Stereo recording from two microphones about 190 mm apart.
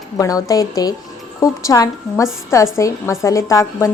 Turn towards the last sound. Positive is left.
turn(degrees=15)  # may be behind; listen again after turning